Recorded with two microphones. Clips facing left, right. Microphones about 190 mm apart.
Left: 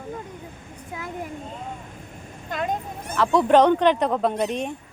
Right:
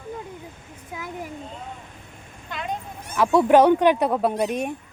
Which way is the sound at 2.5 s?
45° left (ahead or behind).